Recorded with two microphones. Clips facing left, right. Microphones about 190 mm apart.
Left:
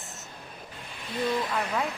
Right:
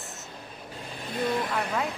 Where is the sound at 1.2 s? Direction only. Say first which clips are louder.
Even; 55° right (ahead or behind).